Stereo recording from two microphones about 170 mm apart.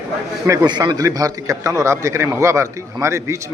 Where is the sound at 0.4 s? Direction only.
20° right (ahead or behind).